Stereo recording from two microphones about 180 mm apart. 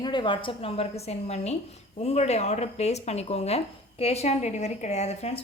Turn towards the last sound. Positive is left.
turn(degrees=35)  # may be behind; listen again after turning